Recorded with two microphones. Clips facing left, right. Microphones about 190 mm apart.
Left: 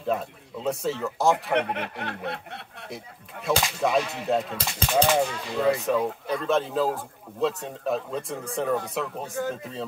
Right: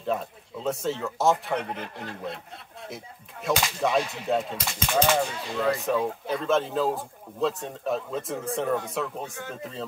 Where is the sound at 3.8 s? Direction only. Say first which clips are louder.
Left 1 dB; centre (ahead or behind).